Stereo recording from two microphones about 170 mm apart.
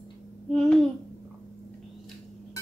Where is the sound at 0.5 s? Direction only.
Centre (ahead or behind).